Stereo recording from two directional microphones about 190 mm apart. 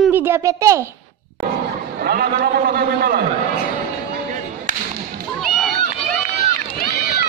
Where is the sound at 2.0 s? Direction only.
55° right (ahead or behind).